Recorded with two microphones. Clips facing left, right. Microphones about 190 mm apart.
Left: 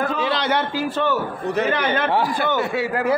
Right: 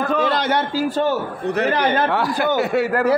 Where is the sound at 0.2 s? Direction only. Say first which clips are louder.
Right 2 dB; 50° right (ahead or behind).